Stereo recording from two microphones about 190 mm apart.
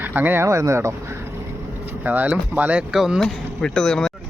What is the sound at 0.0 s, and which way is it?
Speech, 10° right (ahead or behind).